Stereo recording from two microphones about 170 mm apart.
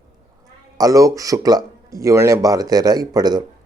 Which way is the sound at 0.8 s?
20° right (ahead or behind).